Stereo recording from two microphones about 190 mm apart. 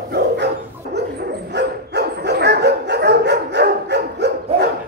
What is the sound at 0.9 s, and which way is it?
Dog, 60° right (ahead or behind).